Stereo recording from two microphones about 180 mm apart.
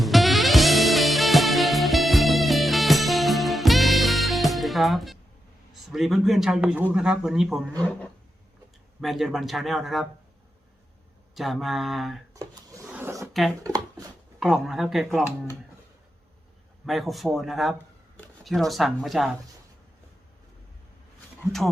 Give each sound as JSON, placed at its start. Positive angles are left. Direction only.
{"t": 0.0, "sound": "music", "side_deg": 0}
{"t": 5.7, "sound": "speech", "side_deg": 0}
{"t": 9.0, "sound": "speech", "side_deg": 0}
{"t": 11.3, "sound": "speech", "side_deg": 0}
{"t": 12.3, "sound": "drawer open or close", "side_deg": -15}
{"t": 12.9, "sound": "a sound", "side_deg": -15}
{"t": 13.7, "sound": "speech", "side_deg": -20}
{"t": 14.3, "sound": "speech", "side_deg": 0}
{"t": 16.8, "sound": "speech", "side_deg": 0}
{"t": 21.6, "sound": "speech", "side_deg": 0}